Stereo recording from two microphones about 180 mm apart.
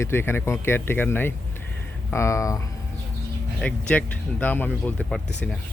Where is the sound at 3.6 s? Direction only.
5° left (ahead or behind).